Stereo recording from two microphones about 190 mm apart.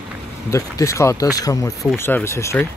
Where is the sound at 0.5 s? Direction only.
15° left (ahead or behind).